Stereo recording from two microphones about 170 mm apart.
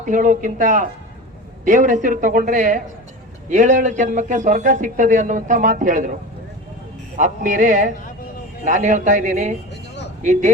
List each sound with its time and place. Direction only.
0.0 s a man's voice: 50° right (ahead or behind)
7.2 s a man's voice: 50° right (ahead or behind)